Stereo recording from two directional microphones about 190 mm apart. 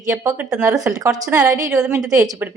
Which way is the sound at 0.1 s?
15° right (ahead or behind).